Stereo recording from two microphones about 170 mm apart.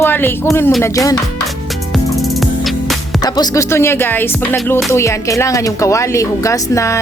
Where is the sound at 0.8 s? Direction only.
20° left (ahead or behind).